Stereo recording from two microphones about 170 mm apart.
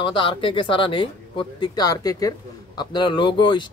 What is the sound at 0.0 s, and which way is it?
Speech, 30° left (ahead or behind).